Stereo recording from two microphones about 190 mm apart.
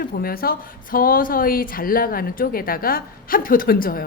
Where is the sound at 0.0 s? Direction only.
50° left (ahead or behind).